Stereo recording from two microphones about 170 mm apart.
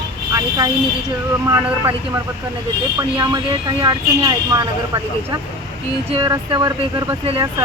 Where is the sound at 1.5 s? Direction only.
20° right (ahead or behind).